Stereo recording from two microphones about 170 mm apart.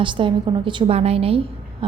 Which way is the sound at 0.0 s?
30° right (ahead or behind).